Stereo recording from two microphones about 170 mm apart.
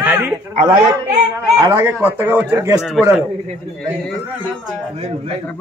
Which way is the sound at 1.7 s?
15° right (ahead or behind).